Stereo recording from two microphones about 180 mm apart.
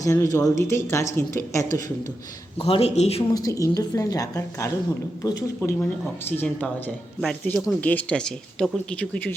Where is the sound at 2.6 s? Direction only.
30° left (ahead or behind).